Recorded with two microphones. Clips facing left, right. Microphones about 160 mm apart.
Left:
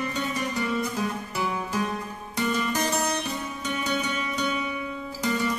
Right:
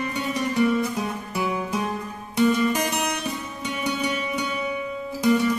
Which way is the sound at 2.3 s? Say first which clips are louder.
Right 7 dB; 15° right (ahead or behind).